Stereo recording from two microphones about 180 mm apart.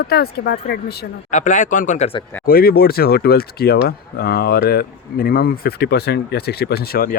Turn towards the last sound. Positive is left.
turn(degrees=55)  # may be behind; listen again after turning